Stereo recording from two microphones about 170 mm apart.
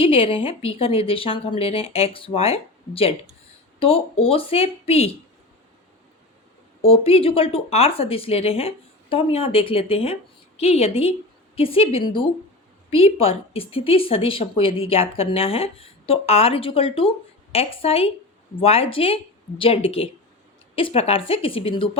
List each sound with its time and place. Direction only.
0.0 s speech: 35° left (ahead or behind)
6.8 s speech: 35° left (ahead or behind)